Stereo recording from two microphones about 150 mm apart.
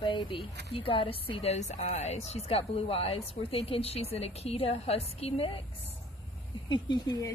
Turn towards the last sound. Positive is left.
turn(degrees=25)  # may be behind; listen again after turning